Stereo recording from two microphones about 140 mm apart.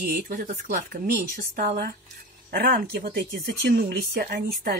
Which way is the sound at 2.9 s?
90° right.